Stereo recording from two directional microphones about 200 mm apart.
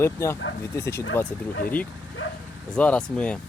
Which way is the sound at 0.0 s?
15° left (ahead or behind).